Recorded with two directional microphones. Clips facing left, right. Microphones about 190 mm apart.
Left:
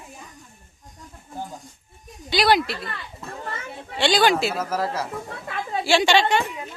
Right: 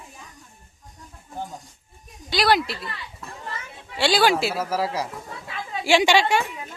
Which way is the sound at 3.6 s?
45° left (ahead or behind).